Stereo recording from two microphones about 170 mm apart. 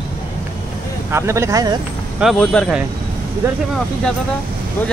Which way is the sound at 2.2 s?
5° left (ahead or behind).